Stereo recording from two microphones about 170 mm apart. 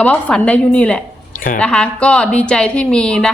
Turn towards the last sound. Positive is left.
turn(degrees=5)  # may be behind; listen again after turning